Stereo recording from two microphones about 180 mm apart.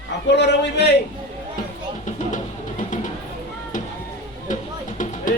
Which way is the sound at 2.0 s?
45° left (ahead or behind).